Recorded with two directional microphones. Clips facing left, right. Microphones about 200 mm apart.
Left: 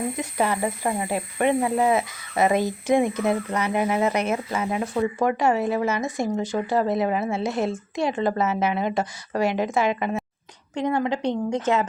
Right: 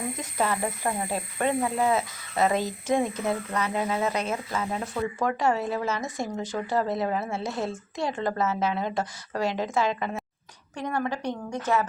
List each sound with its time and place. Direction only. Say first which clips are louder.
0.2 s a woman's voice: left 2 dB; 15° left (ahead or behind)